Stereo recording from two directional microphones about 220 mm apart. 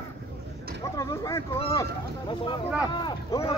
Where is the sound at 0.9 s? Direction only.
15° left (ahead or behind).